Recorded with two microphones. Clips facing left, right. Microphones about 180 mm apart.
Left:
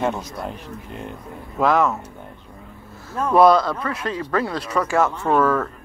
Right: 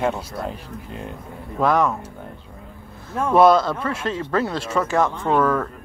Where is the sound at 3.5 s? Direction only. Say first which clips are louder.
Even; 25° right (ahead or behind).